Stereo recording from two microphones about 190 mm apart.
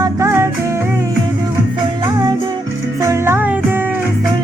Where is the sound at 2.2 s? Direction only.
20° right (ahead or behind).